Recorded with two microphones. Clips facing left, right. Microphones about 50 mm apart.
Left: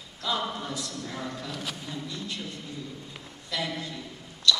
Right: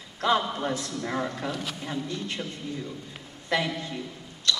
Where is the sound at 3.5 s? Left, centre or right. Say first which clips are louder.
Right 5 dB; right.